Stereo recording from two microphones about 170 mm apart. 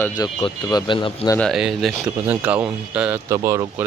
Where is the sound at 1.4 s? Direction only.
Centre (ahead or behind).